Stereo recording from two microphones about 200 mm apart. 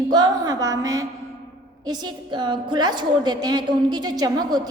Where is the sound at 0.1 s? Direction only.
20° right (ahead or behind).